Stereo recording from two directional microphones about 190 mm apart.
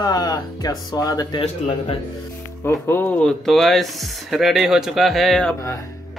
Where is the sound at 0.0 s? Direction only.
20° left (ahead or behind).